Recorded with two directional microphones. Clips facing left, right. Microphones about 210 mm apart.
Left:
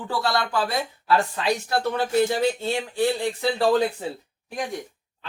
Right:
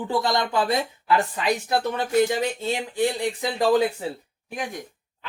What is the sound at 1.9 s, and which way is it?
Speech, 15° right (ahead or behind).